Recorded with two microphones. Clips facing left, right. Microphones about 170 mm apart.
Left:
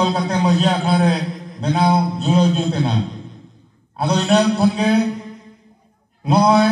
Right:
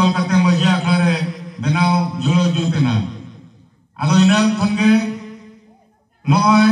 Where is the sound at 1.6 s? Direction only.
45° left (ahead or behind).